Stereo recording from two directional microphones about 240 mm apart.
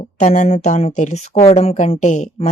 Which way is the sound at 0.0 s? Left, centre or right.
Left.